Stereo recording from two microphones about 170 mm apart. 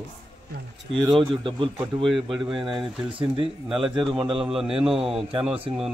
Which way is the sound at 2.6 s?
30° right (ahead or behind).